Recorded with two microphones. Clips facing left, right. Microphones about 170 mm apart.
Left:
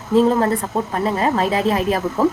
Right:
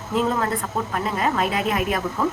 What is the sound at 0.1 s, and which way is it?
A woman's voice, 30° left (ahead or behind).